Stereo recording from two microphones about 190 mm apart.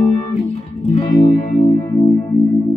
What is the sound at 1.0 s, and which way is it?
Music, 40° left (ahead or behind).